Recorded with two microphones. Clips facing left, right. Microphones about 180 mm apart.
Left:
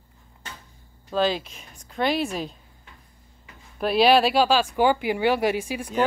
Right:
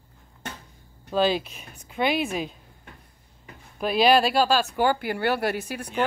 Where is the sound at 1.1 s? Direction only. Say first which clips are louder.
Right 1 dB; 10° right (ahead or behind).